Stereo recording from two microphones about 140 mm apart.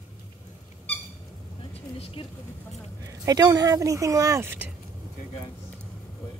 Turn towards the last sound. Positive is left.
turn(degrees=-15)  # may be behind; listen again after turning